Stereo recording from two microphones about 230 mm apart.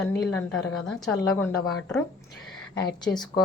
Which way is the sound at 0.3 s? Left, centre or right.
Centre.